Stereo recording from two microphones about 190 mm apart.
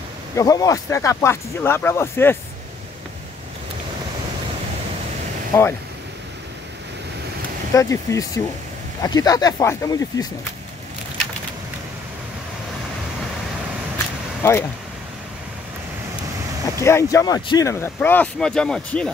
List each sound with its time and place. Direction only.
0.4 s speech: 20° left (ahead or behind)
5.5 s speech: 15° left (ahead or behind)
7.7 s speech: 15° left (ahead or behind)
14.4 s speech: 15° left (ahead or behind)
16.8 s speech: 15° left (ahead or behind)